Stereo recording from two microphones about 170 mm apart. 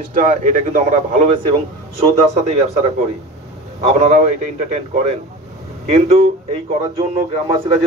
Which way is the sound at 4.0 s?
40° right (ahead or behind).